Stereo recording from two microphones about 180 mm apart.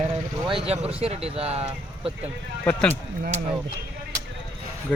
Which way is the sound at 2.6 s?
10° left (ahead or behind).